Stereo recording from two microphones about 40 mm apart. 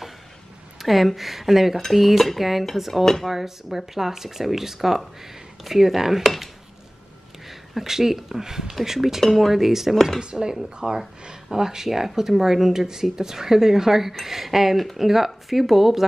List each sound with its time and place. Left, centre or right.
0.7 s speech: centre
9.2 s speech: centre
10.2 s speech: centre